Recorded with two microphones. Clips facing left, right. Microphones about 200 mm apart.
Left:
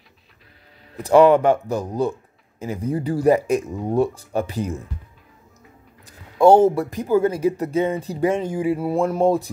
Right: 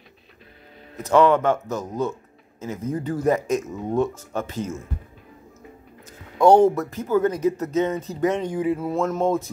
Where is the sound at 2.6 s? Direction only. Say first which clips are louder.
Left 3 dB; 15° left (ahead or behind).